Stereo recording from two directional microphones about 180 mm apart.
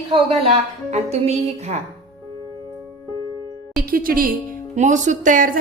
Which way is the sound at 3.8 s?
55° right (ahead or behind).